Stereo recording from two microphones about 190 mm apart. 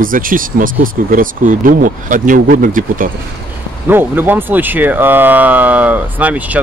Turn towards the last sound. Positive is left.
turn(degrees=-10)  # may be behind; listen again after turning